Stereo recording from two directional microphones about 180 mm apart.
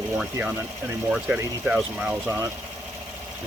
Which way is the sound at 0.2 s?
5° right (ahead or behind).